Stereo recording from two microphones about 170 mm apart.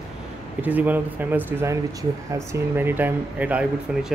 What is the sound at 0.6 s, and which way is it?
Speech, 10° right (ahead or behind).